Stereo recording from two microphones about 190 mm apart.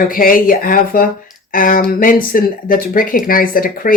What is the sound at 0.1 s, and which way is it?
Speech, 50° left (ahead or behind).